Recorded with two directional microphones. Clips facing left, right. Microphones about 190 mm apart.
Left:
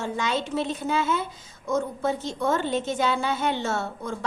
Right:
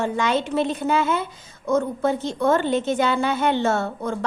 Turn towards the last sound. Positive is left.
turn(degrees=-60)  # may be behind; listen again after turning